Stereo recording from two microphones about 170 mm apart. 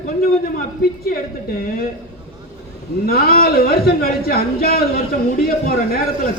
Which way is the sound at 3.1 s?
60° left (ahead or behind).